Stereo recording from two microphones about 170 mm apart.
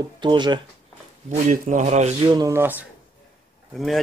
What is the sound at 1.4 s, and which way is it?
Speech, 45° right (ahead or behind).